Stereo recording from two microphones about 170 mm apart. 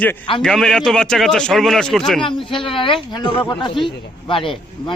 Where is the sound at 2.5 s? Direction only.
30° left (ahead or behind).